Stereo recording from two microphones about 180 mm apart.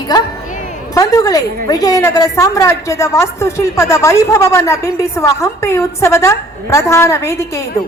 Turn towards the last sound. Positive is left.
turn(degrees=15)  # may be behind; listen again after turning